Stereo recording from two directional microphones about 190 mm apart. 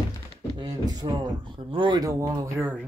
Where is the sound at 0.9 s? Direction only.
25° right (ahead or behind).